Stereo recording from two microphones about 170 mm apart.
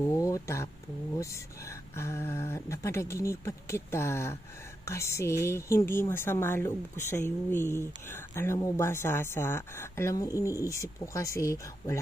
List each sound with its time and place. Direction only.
0.0 s a woman's voice: 20° left (ahead or behind)